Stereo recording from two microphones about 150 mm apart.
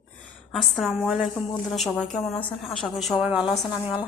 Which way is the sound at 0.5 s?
Centre (ahead or behind).